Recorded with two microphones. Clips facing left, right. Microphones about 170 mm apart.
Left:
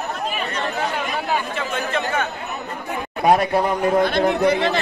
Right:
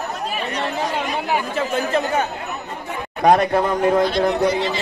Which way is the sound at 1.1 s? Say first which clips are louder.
Right 1 dB; 15° right (ahead or behind).